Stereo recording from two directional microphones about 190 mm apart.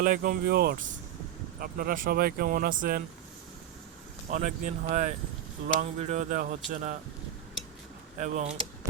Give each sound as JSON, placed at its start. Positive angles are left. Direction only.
{"t": 0.0, "sound": "speech", "side_deg": -45}
{"t": 4.3, "sound": "speech", "side_deg": -40}
{"t": 8.2, "sound": "speech", "side_deg": -40}